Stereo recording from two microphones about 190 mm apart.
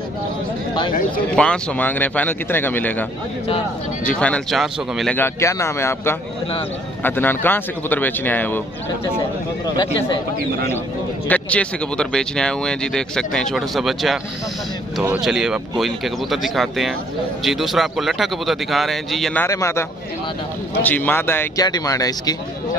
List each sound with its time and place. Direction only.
1.3 s speech: 5° left (ahead or behind)
5.1 s speech: 15° left (ahead or behind)
11.2 s speech: 5° left (ahead or behind)
19.4 s speech: 15° left (ahead or behind)